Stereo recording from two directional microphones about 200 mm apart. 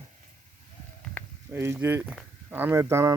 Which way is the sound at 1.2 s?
10° left (ahead or behind).